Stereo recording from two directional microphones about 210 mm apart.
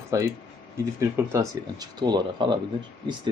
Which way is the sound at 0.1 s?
15° right (ahead or behind).